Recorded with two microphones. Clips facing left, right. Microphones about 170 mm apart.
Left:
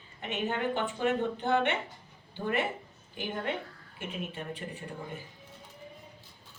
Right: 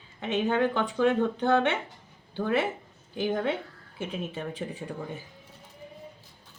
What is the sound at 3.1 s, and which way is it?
Speech, 90° right.